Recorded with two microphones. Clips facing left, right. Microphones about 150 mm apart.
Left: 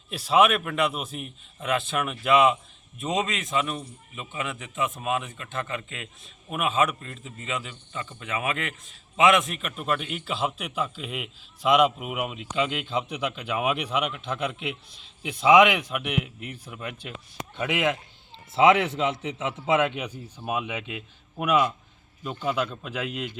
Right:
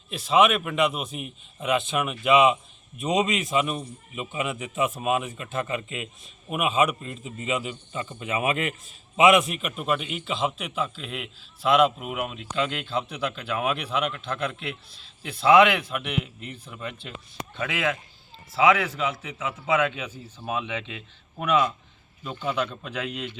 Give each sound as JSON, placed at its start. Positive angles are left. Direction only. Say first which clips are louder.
{"t": 0.1, "sound": "a man's voice", "louder": "even", "side_deg": 10}
{"t": 3.1, "sound": "a man's voice", "louder": "right 4 dB", "side_deg": -15}
{"t": 9.4, "sound": "a man's voice", "louder": "right 3 dB", "side_deg": -5}